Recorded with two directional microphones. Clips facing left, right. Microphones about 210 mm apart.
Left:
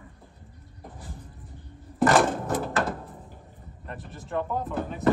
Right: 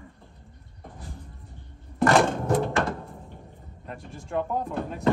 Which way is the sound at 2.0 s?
Centre (ahead or behind).